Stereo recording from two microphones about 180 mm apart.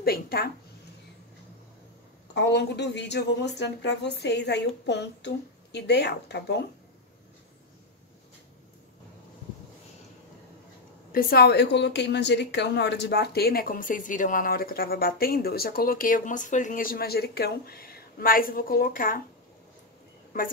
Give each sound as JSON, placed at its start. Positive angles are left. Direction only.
{"t": 0.0, "sound": "a woman's voice", "side_deg": 55}
{"t": 2.3, "sound": "a woman's voice", "side_deg": 70}
{"t": 11.1, "sound": "a woman's voice", "side_deg": 55}